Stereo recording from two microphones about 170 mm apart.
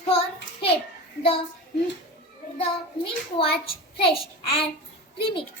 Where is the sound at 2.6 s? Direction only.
30° left (ahead or behind).